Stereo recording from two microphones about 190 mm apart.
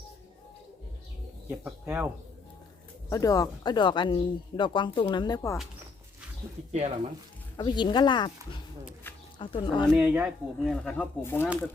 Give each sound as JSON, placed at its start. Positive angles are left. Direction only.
{"t": 1.5, "sound": "speech", "side_deg": -10}
{"t": 3.1, "sound": "speech", "side_deg": 20}
{"t": 7.5, "sound": "speech", "side_deg": 25}
{"t": 9.4, "sound": "speech", "side_deg": 25}
{"t": 9.9, "sound": "speech", "side_deg": -5}